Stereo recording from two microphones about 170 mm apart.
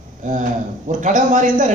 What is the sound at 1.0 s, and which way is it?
Speech, 45° right (ahead or behind).